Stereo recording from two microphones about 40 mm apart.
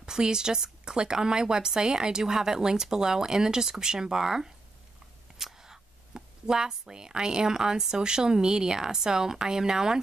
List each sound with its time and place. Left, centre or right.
0.0 s speech: centre
5.4 s a sound: centre
7.9 s speech: centre